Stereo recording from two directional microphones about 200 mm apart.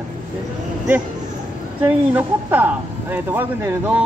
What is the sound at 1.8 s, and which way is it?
A woman's voice, 10° right (ahead or behind).